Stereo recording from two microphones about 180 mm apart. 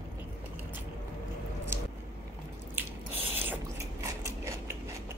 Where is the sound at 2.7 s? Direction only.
10° right (ahead or behind).